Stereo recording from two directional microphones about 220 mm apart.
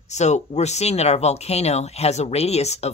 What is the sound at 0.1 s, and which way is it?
Speech, 30° left (ahead or behind).